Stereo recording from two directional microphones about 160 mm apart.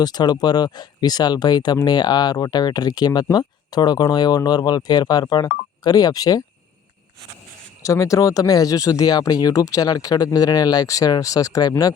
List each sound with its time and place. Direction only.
0.0 s speech: 25° left (ahead or behind)
7.8 s speech: 20° left (ahead or behind)